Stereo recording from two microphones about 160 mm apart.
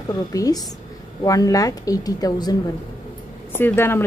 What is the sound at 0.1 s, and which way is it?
A woman's voice, 20° left (ahead or behind).